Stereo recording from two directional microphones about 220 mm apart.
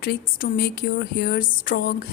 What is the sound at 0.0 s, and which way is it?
A woman's voice, 45° left (ahead or behind).